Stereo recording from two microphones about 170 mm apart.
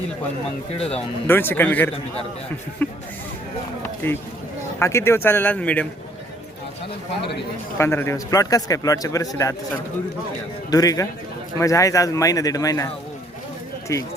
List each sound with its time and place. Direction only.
1.3 s speech: 10° left (ahead or behind)
4.0 s speech: 15° left (ahead or behind)
7.8 s a man's voice: 15° left (ahead or behind)
10.7 s a man's voice: 20° left (ahead or behind)
13.9 s speech: 20° left (ahead or behind)